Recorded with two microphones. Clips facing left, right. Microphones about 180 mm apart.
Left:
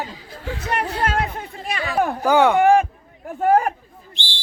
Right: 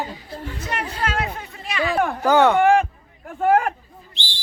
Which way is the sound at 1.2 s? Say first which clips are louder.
Left 2 dB; 35° left (ahead or behind).